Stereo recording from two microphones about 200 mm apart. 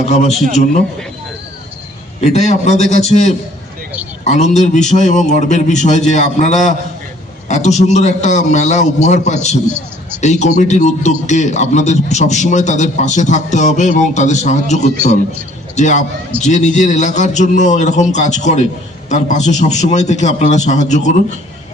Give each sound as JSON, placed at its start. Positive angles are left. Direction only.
{"t": 0.0, "sound": "a man's voice", "side_deg": 35}
{"t": 2.2, "sound": "a man's voice", "side_deg": 35}